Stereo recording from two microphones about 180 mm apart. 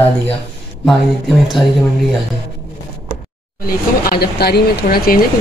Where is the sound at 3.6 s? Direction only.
55° left (ahead or behind).